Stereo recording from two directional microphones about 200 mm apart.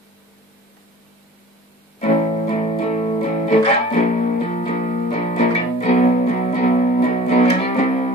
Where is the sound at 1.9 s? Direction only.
35° left (ahead or behind).